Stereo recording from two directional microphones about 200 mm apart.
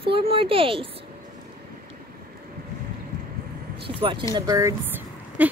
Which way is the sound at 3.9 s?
25° right (ahead or behind).